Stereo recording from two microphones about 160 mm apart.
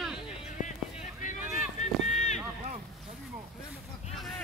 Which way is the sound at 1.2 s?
50° left (ahead or behind).